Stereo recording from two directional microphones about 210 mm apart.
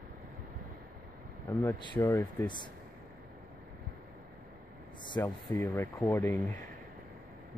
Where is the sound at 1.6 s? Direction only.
15° left (ahead or behind).